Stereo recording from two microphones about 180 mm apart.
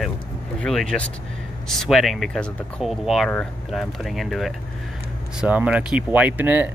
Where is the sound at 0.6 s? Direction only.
5° left (ahead or behind).